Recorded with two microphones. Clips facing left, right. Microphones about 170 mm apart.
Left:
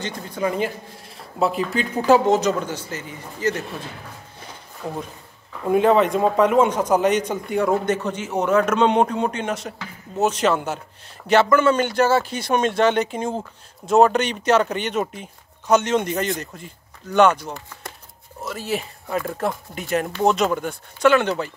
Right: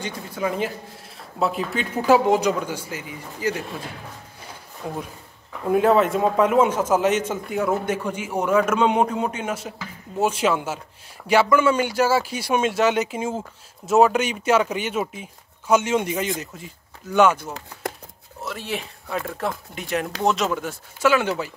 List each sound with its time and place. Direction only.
0.0 s a man's voice: centre (ahead or behind)
4.8 s a man's voice: 10° right (ahead or behind)
18.4 s speech: centre (ahead or behind)